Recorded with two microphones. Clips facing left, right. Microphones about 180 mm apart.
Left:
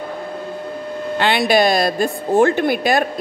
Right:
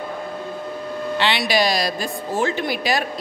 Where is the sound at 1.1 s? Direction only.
50° left (ahead or behind).